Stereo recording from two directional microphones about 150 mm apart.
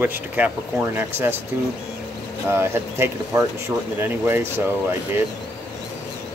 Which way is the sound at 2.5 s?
15° right (ahead or behind).